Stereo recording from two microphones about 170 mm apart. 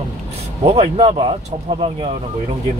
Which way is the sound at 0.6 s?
35° right (ahead or behind).